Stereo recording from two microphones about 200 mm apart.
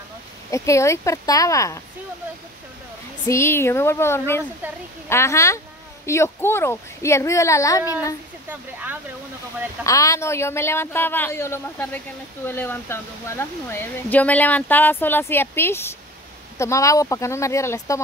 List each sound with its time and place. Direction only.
0.5 s speech: 15° left (ahead or behind)
3.3 s speech: 15° left (ahead or behind)
9.8 s speech: 15° left (ahead or behind)